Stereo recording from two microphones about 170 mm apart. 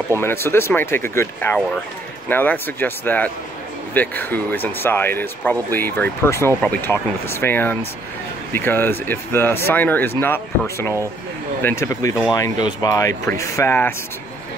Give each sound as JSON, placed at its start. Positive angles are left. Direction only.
{"t": 0.2, "sound": "speech", "side_deg": 15}